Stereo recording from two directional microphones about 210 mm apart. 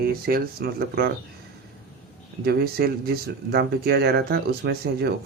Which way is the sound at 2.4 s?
50° right (ahead or behind).